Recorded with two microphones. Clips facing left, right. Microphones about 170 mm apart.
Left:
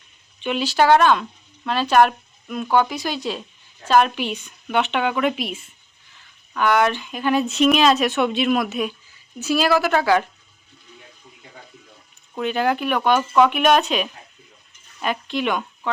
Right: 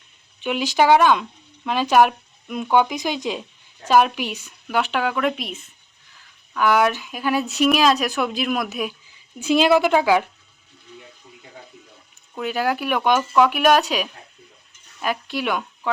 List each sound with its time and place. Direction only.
0.4 s speech: 10° right (ahead or behind)
9.4 s speech: 20° right (ahead or behind)
12.4 s speech: 5° right (ahead or behind)